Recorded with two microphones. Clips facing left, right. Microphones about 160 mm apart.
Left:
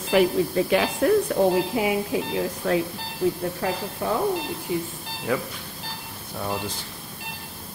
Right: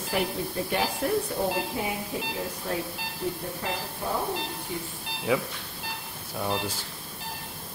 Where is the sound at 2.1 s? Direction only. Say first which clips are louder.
Left 7 dB; 90° left.